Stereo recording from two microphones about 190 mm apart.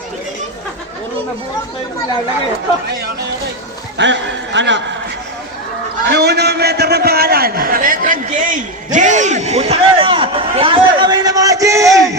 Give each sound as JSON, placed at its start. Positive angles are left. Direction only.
{"t": 3.9, "sound": "a man's voice", "side_deg": -70}
{"t": 6.1, "sound": "a man's voice", "side_deg": -60}